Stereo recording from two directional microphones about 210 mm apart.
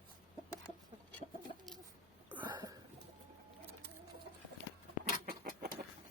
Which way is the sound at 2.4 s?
20° right (ahead or behind).